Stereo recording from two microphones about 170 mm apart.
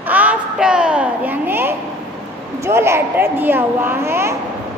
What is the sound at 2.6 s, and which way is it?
A woman's voice, 15° right (ahead or behind).